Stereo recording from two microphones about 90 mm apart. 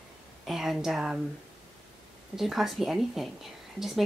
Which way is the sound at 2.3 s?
5° right (ahead or behind).